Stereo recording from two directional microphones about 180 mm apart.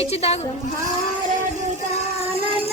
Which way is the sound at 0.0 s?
35° left (ahead or behind).